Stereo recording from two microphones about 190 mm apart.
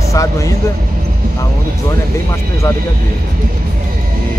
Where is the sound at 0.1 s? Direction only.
15° left (ahead or behind).